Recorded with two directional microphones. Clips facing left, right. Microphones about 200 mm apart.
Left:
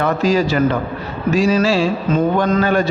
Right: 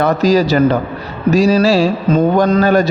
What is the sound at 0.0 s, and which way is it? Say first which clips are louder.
A man's voice: right 4 dB; 40° right (ahead or behind).